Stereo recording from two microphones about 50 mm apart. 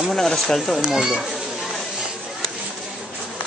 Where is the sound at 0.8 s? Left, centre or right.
Centre.